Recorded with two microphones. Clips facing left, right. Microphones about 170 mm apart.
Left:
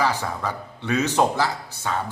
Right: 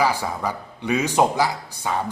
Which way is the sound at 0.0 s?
10° right (ahead or behind).